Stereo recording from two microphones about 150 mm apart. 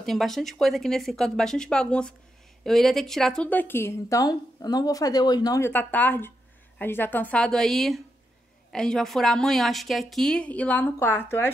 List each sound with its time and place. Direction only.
0.0 s a woman's voice: centre (ahead or behind); by 5.7 s 25° left (ahead or behind)
5.7 s a woman's voice: 10° left (ahead or behind)